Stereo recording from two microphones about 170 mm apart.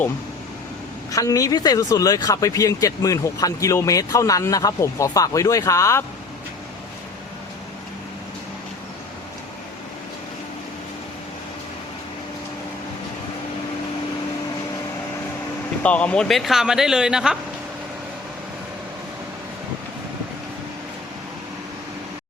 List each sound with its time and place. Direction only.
1.1 s speech: 20° left (ahead or behind)
15.8 s speech: 5° left (ahead or behind)